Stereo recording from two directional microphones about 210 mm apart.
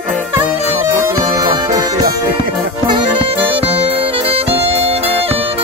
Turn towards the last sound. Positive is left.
turn(degrees=-30)  # may be behind; listen again after turning